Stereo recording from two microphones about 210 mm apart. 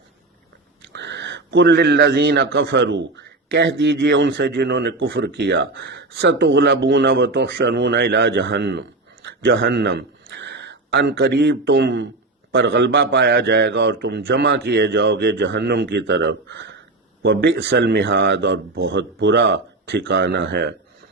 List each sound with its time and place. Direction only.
0.9 s a man's voice: 55° right (ahead or behind)